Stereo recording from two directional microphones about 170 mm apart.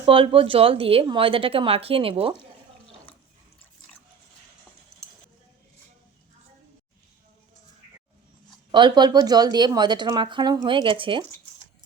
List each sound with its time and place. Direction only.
0.0 s a woman's voice: 30° right (ahead or behind)
8.7 s speech: 25° right (ahead or behind)